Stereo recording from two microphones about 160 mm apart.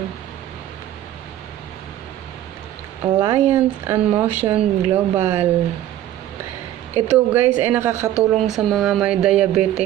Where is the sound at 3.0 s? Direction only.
15° right (ahead or behind).